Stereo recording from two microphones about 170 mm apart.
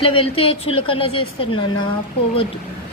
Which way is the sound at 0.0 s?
30° left (ahead or behind).